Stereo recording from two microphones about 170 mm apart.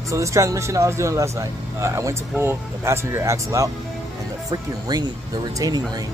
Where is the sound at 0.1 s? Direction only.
15° right (ahead or behind).